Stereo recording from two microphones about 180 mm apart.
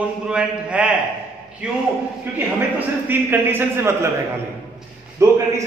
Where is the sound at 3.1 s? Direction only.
10° right (ahead or behind).